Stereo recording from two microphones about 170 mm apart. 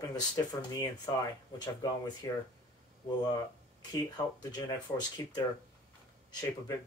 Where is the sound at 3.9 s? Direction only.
25° left (ahead or behind).